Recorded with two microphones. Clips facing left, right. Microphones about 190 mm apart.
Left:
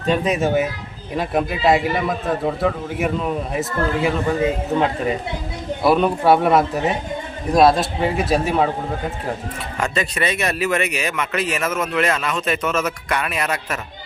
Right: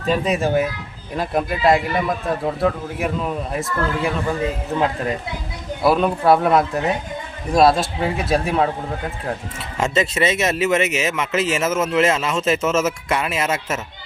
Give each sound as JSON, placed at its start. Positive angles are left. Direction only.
{"t": 0.1, "sound": "a man's voice", "side_deg": 0}
{"t": 9.8, "sound": "speech", "side_deg": -25}